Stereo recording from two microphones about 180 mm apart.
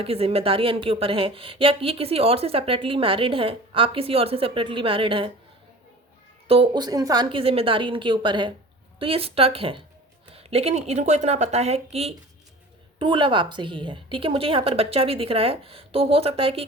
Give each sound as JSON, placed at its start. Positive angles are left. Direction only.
{"t": 0.0, "sound": "a woman's voice", "side_deg": -30}
{"t": 6.5, "sound": "a woman's voice", "side_deg": -25}